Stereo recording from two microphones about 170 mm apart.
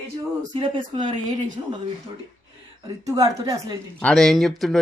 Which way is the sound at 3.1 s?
20° right (ahead or behind).